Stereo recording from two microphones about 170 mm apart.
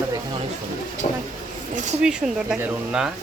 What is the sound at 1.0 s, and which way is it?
Speech, 40° left (ahead or behind).